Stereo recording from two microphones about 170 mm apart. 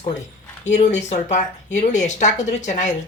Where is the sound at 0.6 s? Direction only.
45° left (ahead or behind).